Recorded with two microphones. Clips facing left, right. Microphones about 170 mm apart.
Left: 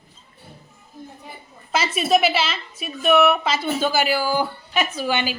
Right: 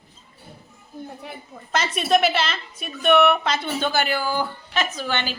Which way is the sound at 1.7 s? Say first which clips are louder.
Left 1 dB; 5° left (ahead or behind).